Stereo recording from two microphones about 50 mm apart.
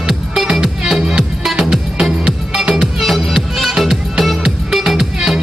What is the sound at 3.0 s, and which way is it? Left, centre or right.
Music, centre.